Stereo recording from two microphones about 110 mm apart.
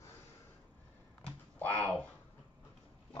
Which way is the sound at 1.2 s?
15° left (ahead or behind).